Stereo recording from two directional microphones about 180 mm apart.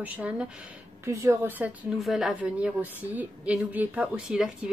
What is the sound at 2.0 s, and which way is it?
A woman's voice, centre (ahead or behind).